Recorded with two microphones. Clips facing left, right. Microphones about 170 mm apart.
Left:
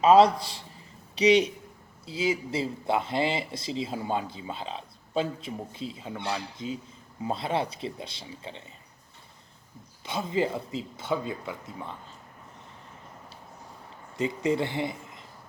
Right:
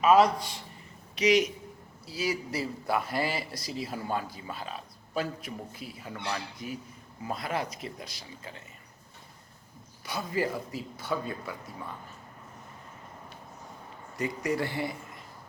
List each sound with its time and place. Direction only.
0.0 s speech: 30° left (ahead or behind)
10.1 s speech: 25° left (ahead or behind)
14.2 s speech: 25° left (ahead or behind)